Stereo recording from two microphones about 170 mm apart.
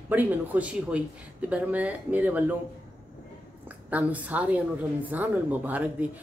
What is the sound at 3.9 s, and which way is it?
Speech, 10° right (ahead or behind).